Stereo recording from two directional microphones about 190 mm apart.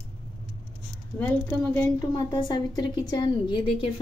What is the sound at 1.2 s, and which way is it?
Speech, 10° left (ahead or behind).